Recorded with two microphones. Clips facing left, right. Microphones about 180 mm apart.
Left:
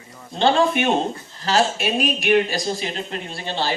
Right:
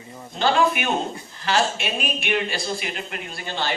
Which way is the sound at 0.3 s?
25° left (ahead or behind).